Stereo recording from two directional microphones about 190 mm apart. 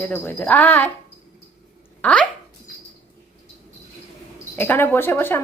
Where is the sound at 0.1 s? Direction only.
10° left (ahead or behind).